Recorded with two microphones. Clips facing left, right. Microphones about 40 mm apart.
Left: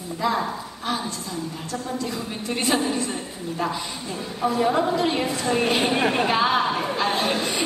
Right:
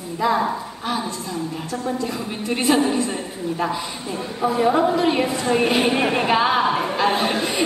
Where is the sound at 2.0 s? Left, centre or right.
Centre.